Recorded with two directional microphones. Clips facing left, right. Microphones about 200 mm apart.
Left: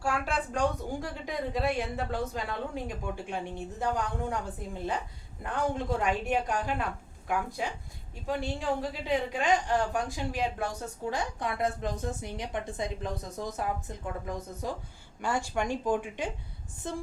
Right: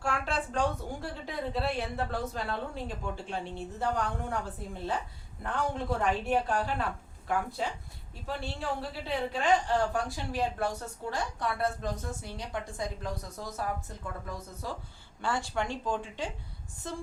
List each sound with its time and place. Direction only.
0.0 s a woman's voice: 10° left (ahead or behind)
6.0 s a woman's voice: 15° left (ahead or behind)